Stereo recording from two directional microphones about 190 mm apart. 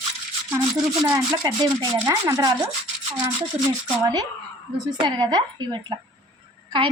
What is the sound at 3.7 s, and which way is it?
Speech, 20° right (ahead or behind).